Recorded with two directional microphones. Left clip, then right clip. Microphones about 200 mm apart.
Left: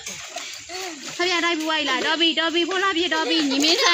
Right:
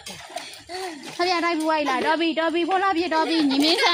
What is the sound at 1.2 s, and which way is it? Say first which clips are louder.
Speech: even; 60° right (ahead or behind).